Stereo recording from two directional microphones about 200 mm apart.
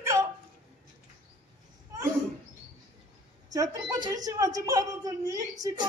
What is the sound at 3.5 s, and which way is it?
A woman's voice, 20° right (ahead or behind).